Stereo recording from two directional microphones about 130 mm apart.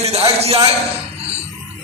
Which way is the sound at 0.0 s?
50° right (ahead or behind).